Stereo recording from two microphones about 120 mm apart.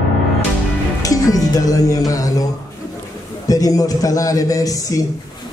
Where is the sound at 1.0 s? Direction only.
30° left (ahead or behind).